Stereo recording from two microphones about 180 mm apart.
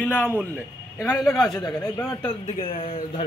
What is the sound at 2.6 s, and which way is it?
Speech, 30° left (ahead or behind).